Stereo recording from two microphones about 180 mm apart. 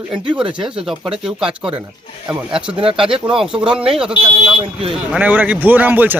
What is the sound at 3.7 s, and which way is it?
Speech, 5° right (ahead or behind).